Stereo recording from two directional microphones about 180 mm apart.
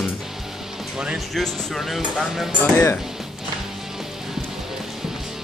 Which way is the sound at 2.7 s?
15° left (ahead or behind).